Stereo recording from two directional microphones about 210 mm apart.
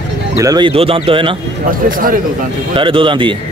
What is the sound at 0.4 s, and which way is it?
Speech, 20° right (ahead or behind).